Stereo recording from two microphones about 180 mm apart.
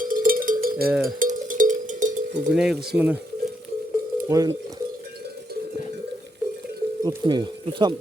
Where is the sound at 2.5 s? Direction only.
Centre (ahead or behind).